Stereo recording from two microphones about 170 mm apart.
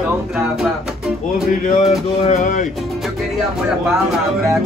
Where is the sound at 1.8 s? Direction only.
45° left (ahead or behind).